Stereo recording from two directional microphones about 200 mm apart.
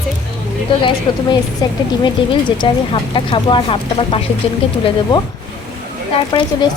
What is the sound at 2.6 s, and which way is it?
Speech, 25° left (ahead or behind).